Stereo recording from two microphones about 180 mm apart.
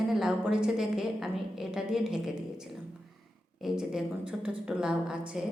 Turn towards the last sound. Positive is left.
turn(degrees=-5)  # may be behind; listen again after turning